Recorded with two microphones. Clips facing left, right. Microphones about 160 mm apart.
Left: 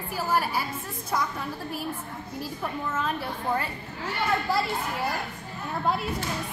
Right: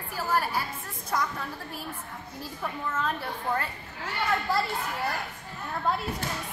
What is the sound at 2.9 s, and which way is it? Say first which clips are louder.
Speech: left 1 dB; 5° left (ahead or behind).